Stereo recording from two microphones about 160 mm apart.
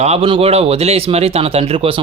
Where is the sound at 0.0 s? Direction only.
40° right (ahead or behind).